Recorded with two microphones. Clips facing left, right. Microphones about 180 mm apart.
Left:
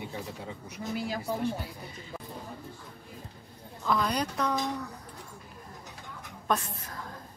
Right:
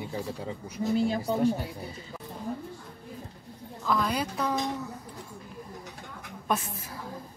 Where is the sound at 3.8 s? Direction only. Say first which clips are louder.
Even; centre (ahead or behind).